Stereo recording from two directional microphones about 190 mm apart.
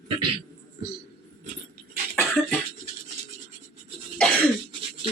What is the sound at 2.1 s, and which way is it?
Cough, 10° left (ahead or behind).